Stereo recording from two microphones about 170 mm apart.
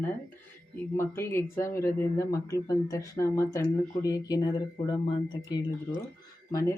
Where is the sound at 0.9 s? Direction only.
15° left (ahead or behind).